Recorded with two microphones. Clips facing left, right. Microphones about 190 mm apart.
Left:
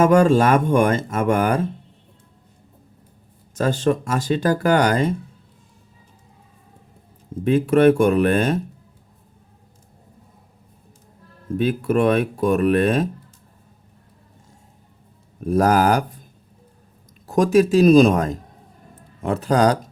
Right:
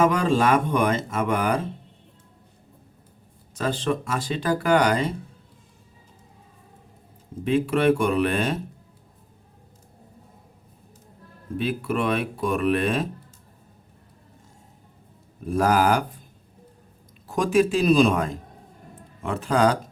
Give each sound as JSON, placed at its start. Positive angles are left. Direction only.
{"t": 0.0, "sound": "speech", "side_deg": 45}
{"t": 3.5, "sound": "speech", "side_deg": 45}
{"t": 7.4, "sound": "speech", "side_deg": 45}
{"t": 11.5, "sound": "speech", "side_deg": 40}
{"t": 15.4, "sound": "speech", "side_deg": 40}
{"t": 17.2, "sound": "speech", "side_deg": 40}